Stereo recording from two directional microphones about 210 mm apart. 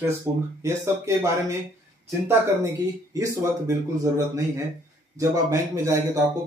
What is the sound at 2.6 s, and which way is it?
Speech, 15° right (ahead or behind).